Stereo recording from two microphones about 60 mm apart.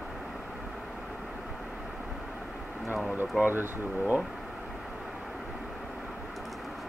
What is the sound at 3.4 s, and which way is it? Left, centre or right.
Speech, right.